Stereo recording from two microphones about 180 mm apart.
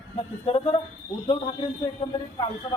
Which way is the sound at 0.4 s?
30° left (ahead or behind).